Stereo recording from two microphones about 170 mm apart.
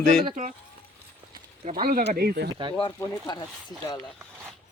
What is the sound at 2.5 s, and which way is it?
Speech, 25° right (ahead or behind).